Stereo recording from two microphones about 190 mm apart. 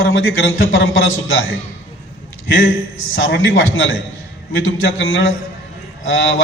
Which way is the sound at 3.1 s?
80° left.